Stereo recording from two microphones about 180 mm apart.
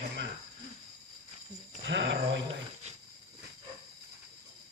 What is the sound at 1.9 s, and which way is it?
Speech, 80° right.